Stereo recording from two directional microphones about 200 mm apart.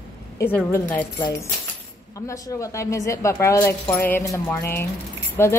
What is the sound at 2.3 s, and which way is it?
A woman's voice, 15° left (ahead or behind).